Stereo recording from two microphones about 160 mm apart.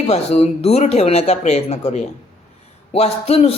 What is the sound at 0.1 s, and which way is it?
A woman's voice, 40° left (ahead or behind).